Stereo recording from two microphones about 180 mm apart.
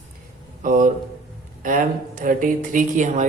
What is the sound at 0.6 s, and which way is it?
A woman's voice, 45° right (ahead or behind).